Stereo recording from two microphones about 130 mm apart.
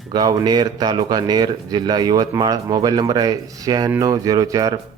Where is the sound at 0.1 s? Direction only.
30° right (ahead or behind).